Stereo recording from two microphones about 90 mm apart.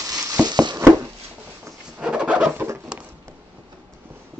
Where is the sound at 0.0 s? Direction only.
45° right (ahead or behind).